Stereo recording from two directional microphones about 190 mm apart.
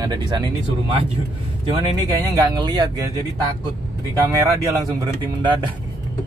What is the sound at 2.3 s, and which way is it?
Speech, 20° right (ahead or behind).